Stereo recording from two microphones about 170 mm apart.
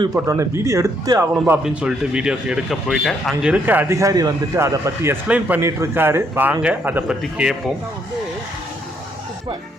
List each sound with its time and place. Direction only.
0.0 s speech: 20° right (ahead or behind)
1.6 s a man's voice: 5° right (ahead or behind)